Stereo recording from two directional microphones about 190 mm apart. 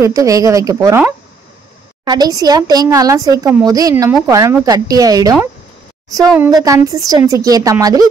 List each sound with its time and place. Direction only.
0.0 s speech: 15° right (ahead or behind)
6.5 s speech: 20° right (ahead or behind)